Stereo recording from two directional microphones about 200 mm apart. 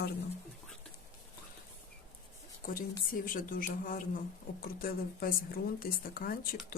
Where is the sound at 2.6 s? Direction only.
45° left (ahead or behind).